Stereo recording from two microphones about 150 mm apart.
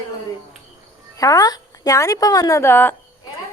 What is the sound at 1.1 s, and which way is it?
Speech, 25° left (ahead or behind).